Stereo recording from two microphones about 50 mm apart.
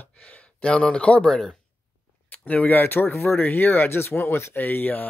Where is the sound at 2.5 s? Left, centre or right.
Left.